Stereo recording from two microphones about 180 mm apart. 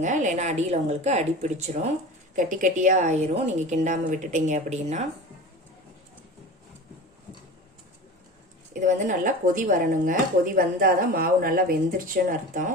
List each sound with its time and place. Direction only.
0.0 s speech: 45° right (ahead or behind)
8.7 s speech: 45° right (ahead or behind)